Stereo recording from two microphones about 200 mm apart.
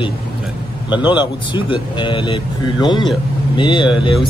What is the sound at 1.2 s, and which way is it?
Speech, 25° left (ahead or behind).